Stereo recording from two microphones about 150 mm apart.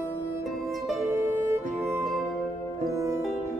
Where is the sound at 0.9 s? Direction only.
15° right (ahead or behind).